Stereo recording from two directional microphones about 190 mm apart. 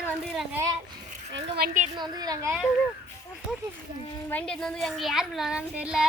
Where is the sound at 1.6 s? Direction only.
45° right (ahead or behind).